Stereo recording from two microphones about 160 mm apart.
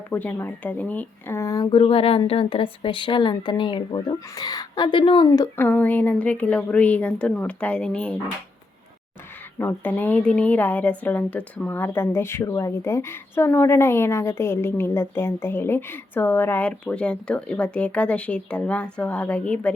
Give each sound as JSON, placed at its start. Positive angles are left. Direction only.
{"t": 0.1, "sound": "speech", "side_deg": 10}
{"t": 5.5, "sound": "a woman's voice", "side_deg": 10}
{"t": 9.6, "sound": "a woman's voice", "side_deg": 10}